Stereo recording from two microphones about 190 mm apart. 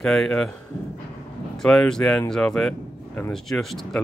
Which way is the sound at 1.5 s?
Centre (ahead or behind).